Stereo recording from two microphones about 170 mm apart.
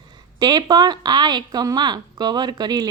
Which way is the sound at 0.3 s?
25° right (ahead or behind).